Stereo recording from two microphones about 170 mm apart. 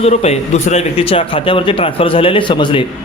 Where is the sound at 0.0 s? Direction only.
40° left (ahead or behind).